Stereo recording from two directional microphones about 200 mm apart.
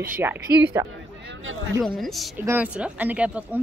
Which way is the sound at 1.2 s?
70° right (ahead or behind).